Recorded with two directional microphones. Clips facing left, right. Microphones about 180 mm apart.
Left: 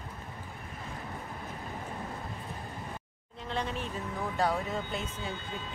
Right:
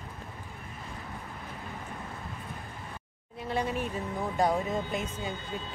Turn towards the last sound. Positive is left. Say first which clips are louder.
# right 3 dB
turn(degrees=-15)  # may be behind; listen again after turning